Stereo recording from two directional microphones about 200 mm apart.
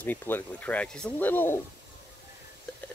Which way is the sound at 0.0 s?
10° left (ahead or behind).